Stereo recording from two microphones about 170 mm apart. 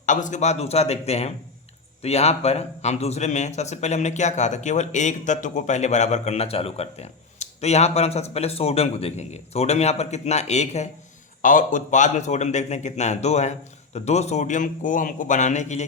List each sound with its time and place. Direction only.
0.0 s a man's voice: 45° left (ahead or behind)